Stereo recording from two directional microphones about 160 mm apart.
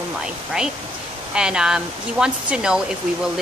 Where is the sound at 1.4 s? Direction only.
5° right (ahead or behind).